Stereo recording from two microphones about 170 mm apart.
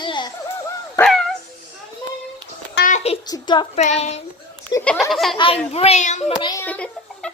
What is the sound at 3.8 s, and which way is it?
Speech, 40° left (ahead or behind).